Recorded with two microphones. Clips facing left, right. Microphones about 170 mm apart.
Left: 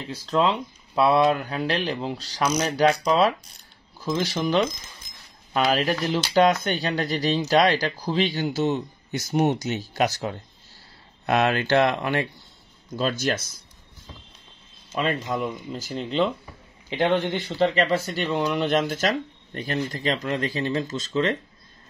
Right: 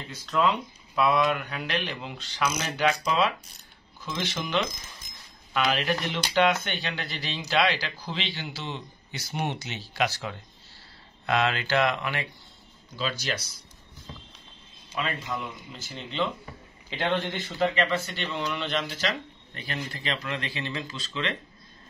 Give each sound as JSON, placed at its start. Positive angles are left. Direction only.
{"t": 0.1, "sound": "speech", "side_deg": 30}
{"t": 15.0, "sound": "speech", "side_deg": 40}
{"t": 17.7, "sound": "speech", "side_deg": 35}